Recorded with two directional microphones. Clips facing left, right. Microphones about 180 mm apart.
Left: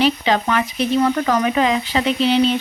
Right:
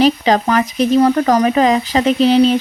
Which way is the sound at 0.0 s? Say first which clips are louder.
Right 5 dB; 40° right (ahead or behind).